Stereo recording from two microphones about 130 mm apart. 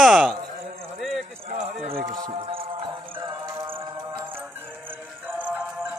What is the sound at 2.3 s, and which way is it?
Music, 45° right (ahead or behind).